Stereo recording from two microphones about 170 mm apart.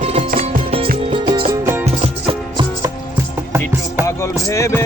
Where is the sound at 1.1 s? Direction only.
30° right (ahead or behind).